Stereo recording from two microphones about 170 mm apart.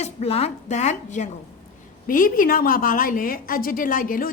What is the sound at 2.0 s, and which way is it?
A woman's voice, 55° left (ahead or behind).